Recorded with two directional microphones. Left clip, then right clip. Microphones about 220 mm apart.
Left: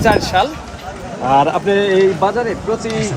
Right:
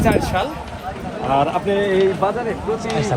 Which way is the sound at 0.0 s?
40° left (ahead or behind).